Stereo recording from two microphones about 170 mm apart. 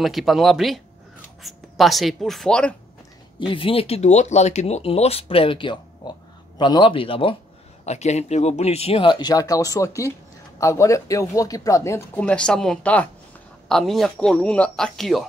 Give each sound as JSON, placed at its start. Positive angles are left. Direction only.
{"t": 0.0, "sound": "speech", "side_deg": 0}
{"t": 3.3, "sound": "speech", "side_deg": 30}